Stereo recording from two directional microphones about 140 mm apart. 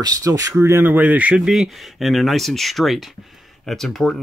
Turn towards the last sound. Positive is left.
turn(degrees=0)  # may be behind; listen again after turning